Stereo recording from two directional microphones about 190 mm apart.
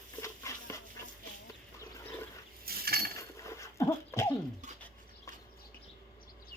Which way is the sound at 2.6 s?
55° right (ahead or behind).